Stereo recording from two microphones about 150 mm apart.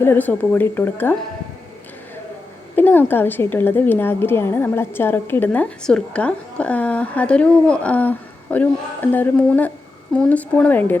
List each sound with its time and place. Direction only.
0.0 s a woman's voice: 15° left (ahead or behind)
2.7 s a woman's voice: 15° left (ahead or behind)